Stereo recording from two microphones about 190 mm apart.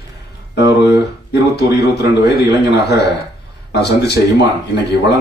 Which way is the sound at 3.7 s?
60° left (ahead or behind).